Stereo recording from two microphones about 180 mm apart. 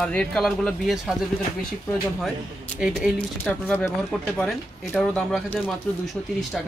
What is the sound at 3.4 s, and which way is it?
Speech, 10° left (ahead or behind).